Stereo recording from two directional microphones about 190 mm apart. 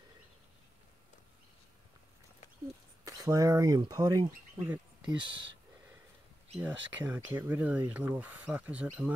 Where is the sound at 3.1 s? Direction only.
15° right (ahead or behind).